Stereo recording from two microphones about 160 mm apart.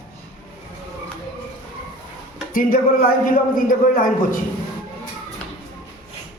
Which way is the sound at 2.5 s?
60° left (ahead or behind).